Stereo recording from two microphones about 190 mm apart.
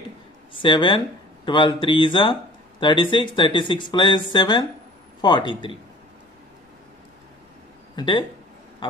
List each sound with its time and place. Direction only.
0.6 s speech: 25° left (ahead or behind)
7.9 s speech: 25° left (ahead or behind)